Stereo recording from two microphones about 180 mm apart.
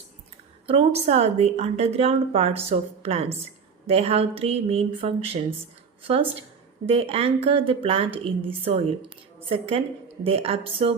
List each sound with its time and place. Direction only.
0.7 s a woman's voice: 35° right (ahead or behind)